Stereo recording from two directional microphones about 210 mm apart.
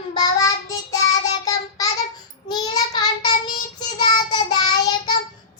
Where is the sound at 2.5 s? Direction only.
20° left (ahead or behind).